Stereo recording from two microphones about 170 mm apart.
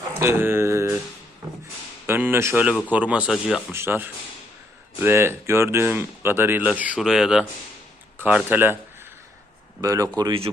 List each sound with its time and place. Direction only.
0.2 s speech: 15° right (ahead or behind)
2.0 s speech: 10° right (ahead or behind)
9.8 s speech: 20° right (ahead or behind)